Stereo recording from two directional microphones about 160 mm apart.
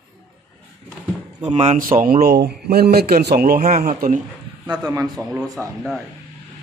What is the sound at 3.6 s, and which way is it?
Speech, 50° right (ahead or behind).